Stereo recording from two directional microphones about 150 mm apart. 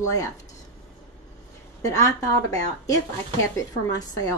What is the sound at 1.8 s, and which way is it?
Speech, 25° left (ahead or behind).